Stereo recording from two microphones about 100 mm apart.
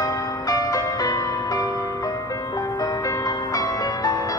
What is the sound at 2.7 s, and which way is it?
Music, 40° left (ahead or behind).